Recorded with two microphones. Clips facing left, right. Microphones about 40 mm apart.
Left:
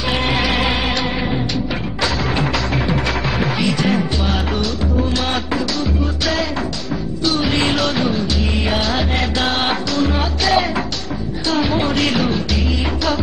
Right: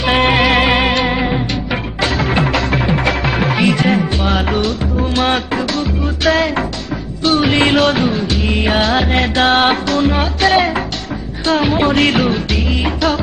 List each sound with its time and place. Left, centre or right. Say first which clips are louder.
0.0 s music: right 6 dB; right
1.1 s music: right 3 dB; right
3.2 s music: right 4 dB; right
7.2 s music of bollywood: right 5 dB; right
8.9 s music: right 5 dB; right